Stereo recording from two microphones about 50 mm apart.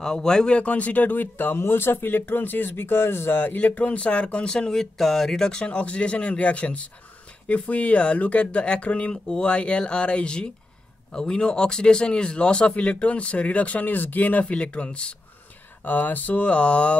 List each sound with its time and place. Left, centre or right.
0.0 s speech: centre
0.6 s speech: left
1.6 s speech: left
3.5 s speech: left
14.4 s speech: left
15.8 s speech: left